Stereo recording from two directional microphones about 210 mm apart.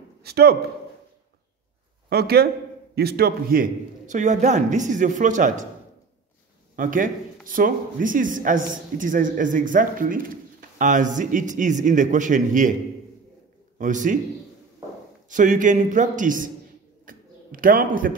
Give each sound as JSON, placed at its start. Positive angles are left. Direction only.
{"t": 0.2, "sound": "a man's voice", "side_deg": -50}
{"t": 2.0, "sound": "a man's voice", "side_deg": -50}
{"t": 6.7, "sound": "a man's voice", "side_deg": -40}
{"t": 13.7, "sound": "a man's voice", "side_deg": -40}
{"t": 15.2, "sound": "a man's voice", "side_deg": -40}
{"t": 17.0, "sound": "a sound", "side_deg": -40}